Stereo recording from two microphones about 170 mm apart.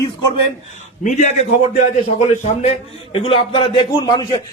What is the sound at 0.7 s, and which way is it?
A man's voice, 45° left (ahead or behind).